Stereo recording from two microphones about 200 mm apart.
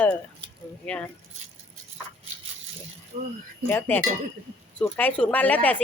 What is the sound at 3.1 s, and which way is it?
Speech, 35° right (ahead or behind).